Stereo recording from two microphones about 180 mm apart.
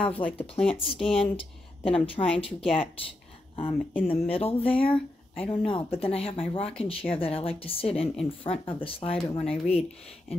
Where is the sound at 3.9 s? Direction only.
35° left (ahead or behind).